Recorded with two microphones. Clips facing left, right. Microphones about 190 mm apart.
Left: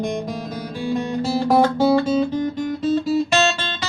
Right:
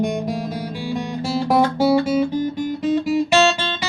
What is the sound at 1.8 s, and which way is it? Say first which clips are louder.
Guitar: even; 10° right (ahead or behind).